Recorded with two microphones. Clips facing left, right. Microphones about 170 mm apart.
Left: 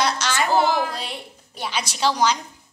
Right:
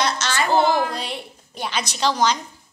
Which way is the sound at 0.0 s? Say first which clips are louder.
Even; 10° left (ahead or behind).